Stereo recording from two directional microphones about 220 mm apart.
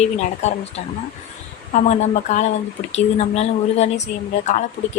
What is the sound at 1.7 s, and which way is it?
Speech, 30° left (ahead or behind).